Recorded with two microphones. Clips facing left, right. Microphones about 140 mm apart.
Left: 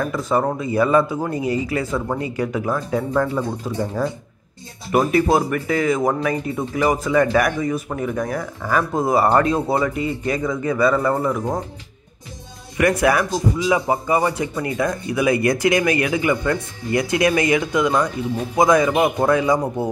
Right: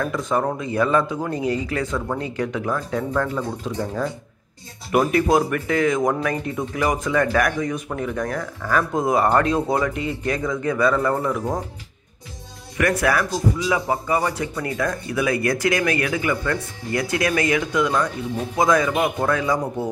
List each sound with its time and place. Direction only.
0.0 s speech: 5° left (ahead or behind)
12.7 s speech: 15° left (ahead or behind)